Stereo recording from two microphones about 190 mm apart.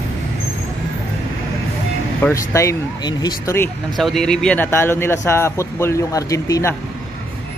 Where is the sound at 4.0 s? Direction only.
Centre (ahead or behind).